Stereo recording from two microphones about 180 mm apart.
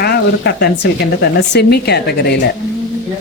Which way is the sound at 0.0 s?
65° left (ahead or behind).